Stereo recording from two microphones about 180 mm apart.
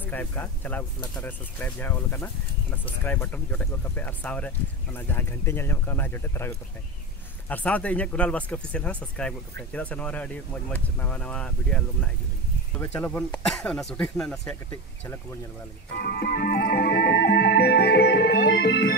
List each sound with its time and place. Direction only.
0.0 s speech: 10° left (ahead or behind)
16.0 s music: 60° left (ahead or behind)